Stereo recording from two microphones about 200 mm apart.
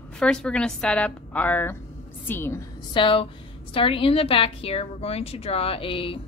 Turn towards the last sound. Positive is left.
turn(degrees=25)  # may be behind; listen again after turning